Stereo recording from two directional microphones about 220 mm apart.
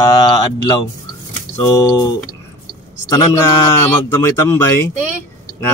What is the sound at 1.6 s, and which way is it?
Speech, 15° left (ahead or behind).